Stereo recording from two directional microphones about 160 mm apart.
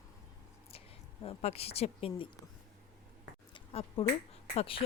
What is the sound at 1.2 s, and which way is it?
Speech, 40° left (ahead or behind).